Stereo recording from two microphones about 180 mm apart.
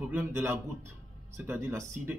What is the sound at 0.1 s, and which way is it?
Speech, 10° right (ahead or behind).